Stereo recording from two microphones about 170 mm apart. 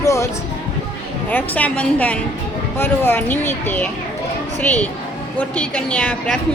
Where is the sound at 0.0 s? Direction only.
20° left (ahead or behind).